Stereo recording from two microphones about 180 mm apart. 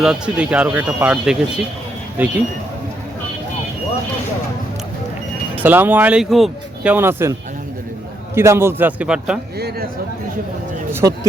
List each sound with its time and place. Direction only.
0.0 s speech: 5° right (ahead or behind)
5.6 s speech: 10° right (ahead or behind)
8.4 s speech: 15° right (ahead or behind)
9.6 s speech: 65° right (ahead or behind)